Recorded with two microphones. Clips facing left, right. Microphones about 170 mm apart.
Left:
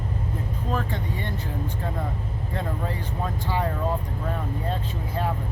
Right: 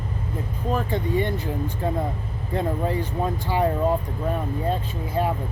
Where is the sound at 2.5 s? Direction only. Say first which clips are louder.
Right 7 dB; 15° right (ahead or behind).